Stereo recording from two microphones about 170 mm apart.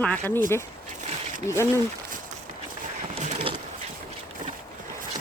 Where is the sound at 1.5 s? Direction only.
15° left (ahead or behind).